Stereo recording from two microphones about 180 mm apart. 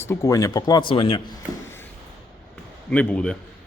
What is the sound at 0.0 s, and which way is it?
Speech, 15° left (ahead or behind).